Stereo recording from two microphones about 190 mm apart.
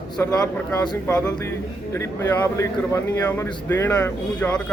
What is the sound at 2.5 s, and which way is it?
A man's voice, 10° left (ahead or behind).